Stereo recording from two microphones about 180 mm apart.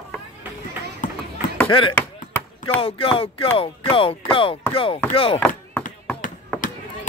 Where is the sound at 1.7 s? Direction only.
30° left (ahead or behind).